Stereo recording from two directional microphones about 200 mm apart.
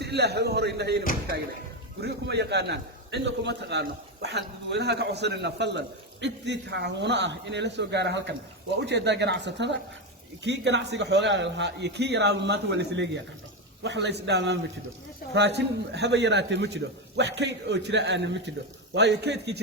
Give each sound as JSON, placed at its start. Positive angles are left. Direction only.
{"t": 0.0, "sound": "a man's voice", "side_deg": -55}